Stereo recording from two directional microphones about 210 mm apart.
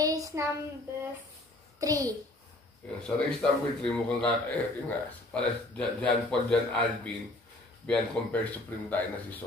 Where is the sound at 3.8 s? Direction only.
5° left (ahead or behind).